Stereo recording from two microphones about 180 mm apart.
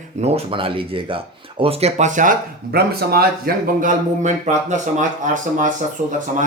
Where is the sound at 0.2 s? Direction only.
30° right (ahead or behind).